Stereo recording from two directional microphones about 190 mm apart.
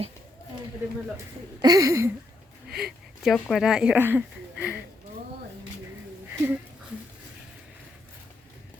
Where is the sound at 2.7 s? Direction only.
Centre (ahead or behind).